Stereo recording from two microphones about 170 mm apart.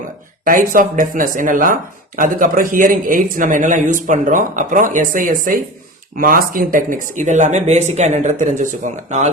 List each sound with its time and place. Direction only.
0.4 s speech: 55° right (ahead or behind)